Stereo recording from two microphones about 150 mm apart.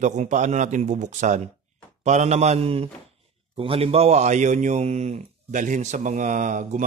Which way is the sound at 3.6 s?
40° right (ahead or behind).